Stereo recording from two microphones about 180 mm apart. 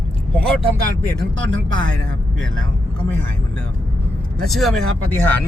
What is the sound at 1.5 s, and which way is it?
Speech, 90° right.